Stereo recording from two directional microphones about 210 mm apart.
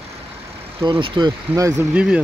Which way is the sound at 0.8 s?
20° right (ahead or behind).